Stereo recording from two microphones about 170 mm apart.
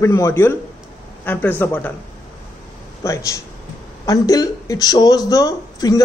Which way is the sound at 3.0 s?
15° left (ahead or behind).